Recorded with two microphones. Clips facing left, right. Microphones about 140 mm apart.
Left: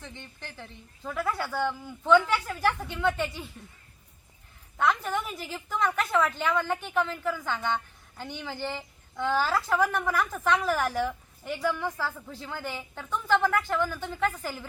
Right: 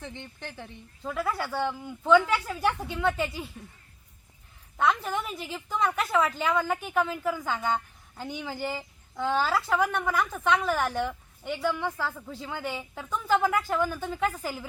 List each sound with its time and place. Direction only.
0.0 s a woman's voice: 20° right (ahead or behind)
1.0 s a woman's voice: 5° right (ahead or behind)
4.8 s a woman's voice: centre (ahead or behind)